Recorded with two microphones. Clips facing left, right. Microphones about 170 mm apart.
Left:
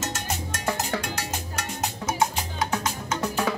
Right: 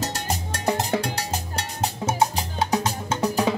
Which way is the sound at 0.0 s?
35° right (ahead or behind).